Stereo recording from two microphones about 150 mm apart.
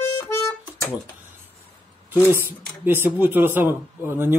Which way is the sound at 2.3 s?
15° right (ahead or behind).